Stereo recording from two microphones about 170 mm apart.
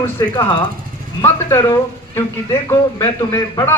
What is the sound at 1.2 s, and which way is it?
Speech, 15° left (ahead or behind).